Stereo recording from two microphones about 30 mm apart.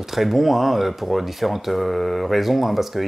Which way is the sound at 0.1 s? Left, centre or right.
Centre.